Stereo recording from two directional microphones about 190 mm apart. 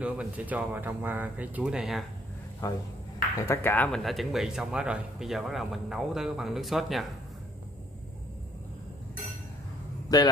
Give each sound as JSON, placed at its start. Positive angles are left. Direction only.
{"t": 0.0, "sound": "speech", "side_deg": -5}
{"t": 2.6, "sound": "speech", "side_deg": 20}
{"t": 10.0, "sound": "speech", "side_deg": 20}